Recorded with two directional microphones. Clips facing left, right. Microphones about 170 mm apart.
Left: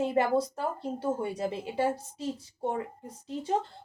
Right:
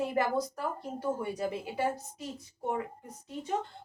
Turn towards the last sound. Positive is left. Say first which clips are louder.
# left 4 dB
turn(degrees=30)  # may be behind; listen again after turning